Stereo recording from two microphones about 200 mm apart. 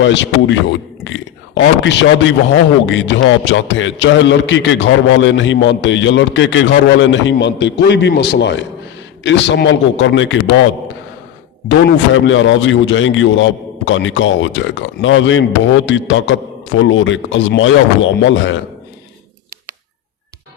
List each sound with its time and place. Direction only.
0.0 s a man's voice: 65° left (ahead or behind)
12.1 s a man's voice: 70° left (ahead or behind)